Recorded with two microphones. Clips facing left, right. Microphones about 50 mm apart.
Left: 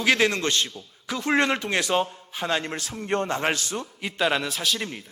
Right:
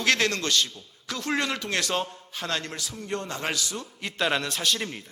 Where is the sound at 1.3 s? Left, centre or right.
Left.